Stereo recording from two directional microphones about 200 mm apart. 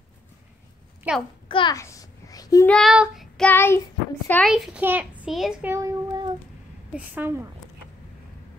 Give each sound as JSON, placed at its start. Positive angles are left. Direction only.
{"t": 1.1, "sound": "a woman's voice", "side_deg": -5}
{"t": 1.5, "sound": "a sound", "side_deg": 20}
{"t": 2.7, "sound": "child singing", "side_deg": 0}
{"t": 4.3, "sound": "a child's voice", "side_deg": 5}